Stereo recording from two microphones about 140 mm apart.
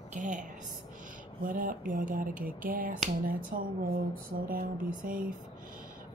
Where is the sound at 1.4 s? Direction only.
75° right (ahead or behind); by 4.5 s 90° right.